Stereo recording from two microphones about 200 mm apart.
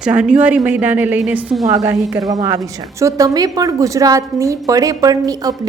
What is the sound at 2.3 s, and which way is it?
A woman's voice, 20° right (ahead or behind).